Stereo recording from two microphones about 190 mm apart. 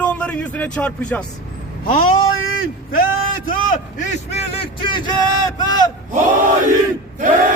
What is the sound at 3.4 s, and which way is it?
Speech, 45° left (ahead or behind).